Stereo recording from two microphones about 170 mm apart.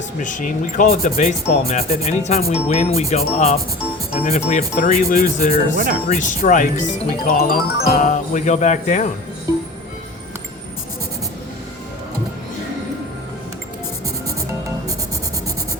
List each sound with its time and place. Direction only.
0.2 s speech: 50° left (ahead or behind)
5.7 s speech: 55° right (ahead or behind)
6.1 s speech: 45° left (ahead or behind)